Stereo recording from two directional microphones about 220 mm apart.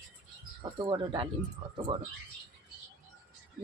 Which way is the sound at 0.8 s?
25° right (ahead or behind).